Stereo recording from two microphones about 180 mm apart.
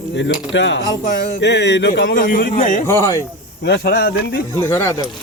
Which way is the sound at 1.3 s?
75° left (ahead or behind).